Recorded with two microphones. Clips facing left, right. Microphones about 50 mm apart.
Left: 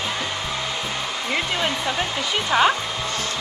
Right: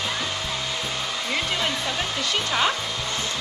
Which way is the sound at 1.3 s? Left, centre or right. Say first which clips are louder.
Left 3 dB; centre.